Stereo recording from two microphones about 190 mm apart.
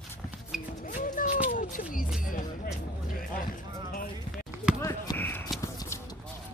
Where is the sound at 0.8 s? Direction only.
45° left (ahead or behind).